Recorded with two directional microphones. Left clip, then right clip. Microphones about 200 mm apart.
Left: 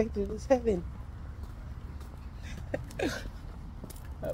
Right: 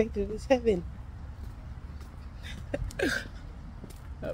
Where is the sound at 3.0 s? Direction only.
20° right (ahead or behind).